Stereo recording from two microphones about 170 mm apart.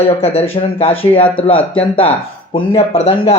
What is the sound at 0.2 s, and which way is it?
Speech, 35° left (ahead or behind).